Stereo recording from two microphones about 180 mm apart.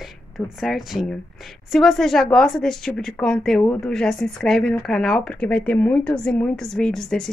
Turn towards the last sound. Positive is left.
turn(degrees=0)  # may be behind; listen again after turning